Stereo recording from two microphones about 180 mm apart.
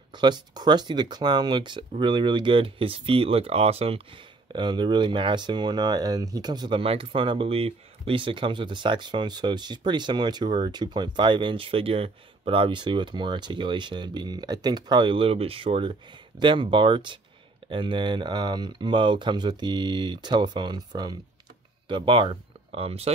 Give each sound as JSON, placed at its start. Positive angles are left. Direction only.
{"t": 0.1, "sound": "speech", "side_deg": -25}